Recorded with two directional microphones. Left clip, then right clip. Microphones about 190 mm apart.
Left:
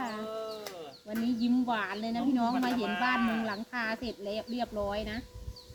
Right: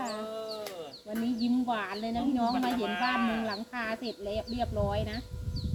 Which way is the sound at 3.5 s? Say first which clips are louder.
Even; 25° left (ahead or behind).